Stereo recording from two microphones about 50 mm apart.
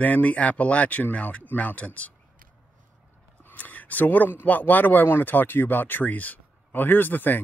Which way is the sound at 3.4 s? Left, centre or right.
Left.